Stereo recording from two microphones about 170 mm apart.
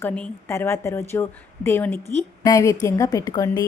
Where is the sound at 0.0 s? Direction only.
10° left (ahead or behind).